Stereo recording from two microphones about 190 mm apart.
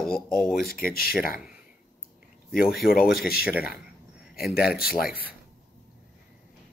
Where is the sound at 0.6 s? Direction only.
50° left (ahead or behind).